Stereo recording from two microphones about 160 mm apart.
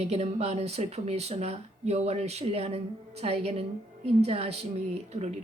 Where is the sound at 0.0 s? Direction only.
40° right (ahead or behind).